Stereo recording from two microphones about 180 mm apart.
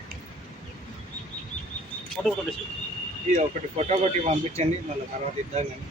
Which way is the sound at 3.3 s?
40° right (ahead or behind).